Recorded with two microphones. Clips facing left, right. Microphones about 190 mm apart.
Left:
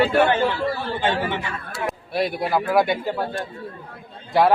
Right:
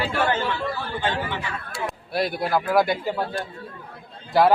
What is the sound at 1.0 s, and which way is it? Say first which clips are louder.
Speech: left 4 dB; 20° left (ahead or behind).